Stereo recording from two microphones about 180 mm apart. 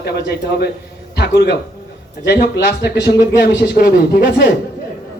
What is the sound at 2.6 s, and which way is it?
Speech, 65° left (ahead or behind).